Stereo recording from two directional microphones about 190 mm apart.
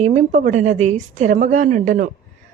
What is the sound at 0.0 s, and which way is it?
A woman's voice, 35° right (ahead or behind).